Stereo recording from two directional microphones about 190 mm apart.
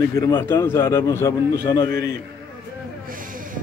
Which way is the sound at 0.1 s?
15° left (ahead or behind).